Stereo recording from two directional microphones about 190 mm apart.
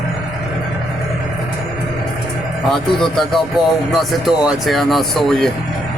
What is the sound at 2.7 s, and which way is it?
Speech, centre (ahead or behind).